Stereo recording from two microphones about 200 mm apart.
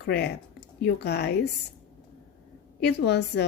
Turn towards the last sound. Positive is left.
turn(degrees=55)  # may be behind; listen again after turning